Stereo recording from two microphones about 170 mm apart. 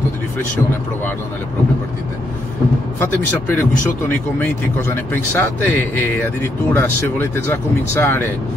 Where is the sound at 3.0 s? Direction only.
10° left (ahead or behind).